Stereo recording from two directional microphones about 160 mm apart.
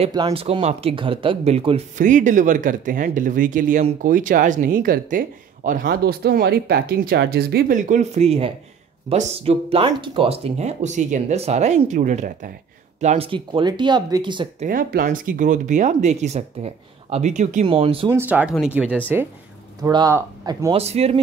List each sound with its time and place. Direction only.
0.1 s speech: 30° right (ahead or behind)
2.0 s speech: 50° right (ahead or behind)
13.3 s speech: 30° right (ahead or behind)
14.6 s speech: 60° right (ahead or behind)
17.6 s speech: 35° right (ahead or behind)
18.1 s speech: 10° right (ahead or behind)
19.8 s speech: 25° right (ahead or behind)
20.7 s speech: 40° right (ahead or behind)